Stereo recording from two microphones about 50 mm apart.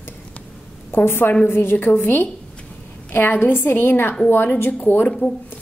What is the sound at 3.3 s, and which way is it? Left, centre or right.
A woman's voice, left.